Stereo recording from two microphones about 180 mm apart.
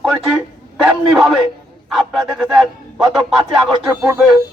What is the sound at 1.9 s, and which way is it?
Speech, centre (ahead or behind).